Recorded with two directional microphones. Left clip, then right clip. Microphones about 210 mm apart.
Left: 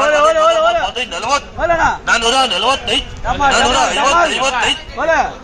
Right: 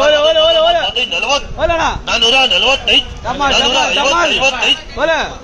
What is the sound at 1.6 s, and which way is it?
Music, 25° right (ahead or behind).